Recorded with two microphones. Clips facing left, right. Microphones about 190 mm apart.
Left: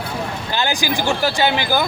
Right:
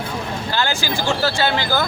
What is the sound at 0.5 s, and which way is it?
Speech, 15° left (ahead or behind).